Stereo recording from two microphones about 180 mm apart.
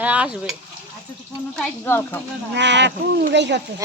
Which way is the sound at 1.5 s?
10° left (ahead or behind).